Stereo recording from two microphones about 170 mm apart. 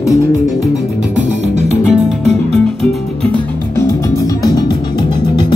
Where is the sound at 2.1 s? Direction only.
Centre (ahead or behind).